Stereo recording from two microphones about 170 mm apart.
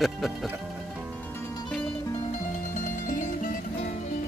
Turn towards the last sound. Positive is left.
turn(degrees=50)  # may be behind; listen again after turning